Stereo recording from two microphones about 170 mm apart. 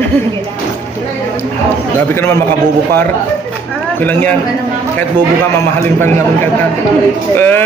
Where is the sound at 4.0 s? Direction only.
10° left (ahead or behind).